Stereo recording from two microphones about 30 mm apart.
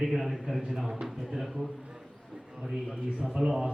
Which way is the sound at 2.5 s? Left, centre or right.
Right.